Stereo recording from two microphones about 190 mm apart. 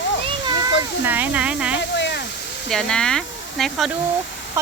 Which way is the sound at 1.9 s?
65° left (ahead or behind).